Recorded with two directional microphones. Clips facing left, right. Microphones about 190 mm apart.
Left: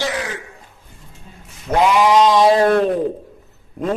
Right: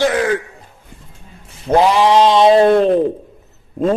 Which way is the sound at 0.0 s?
55° right (ahead or behind).